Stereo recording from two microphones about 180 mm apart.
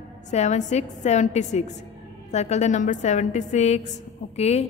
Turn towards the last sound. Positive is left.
turn(degrees=35)  # may be behind; listen again after turning